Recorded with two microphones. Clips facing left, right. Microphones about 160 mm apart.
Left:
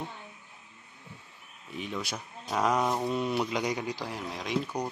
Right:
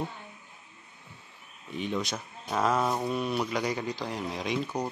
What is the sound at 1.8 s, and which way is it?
Speech, 5° left (ahead or behind).